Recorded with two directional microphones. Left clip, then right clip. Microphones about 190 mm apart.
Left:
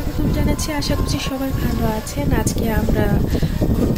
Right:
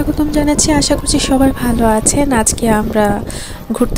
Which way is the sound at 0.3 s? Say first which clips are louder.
Right 10 dB; 50° right (ahead or behind).